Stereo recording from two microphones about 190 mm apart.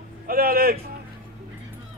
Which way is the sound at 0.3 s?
50° right (ahead or behind).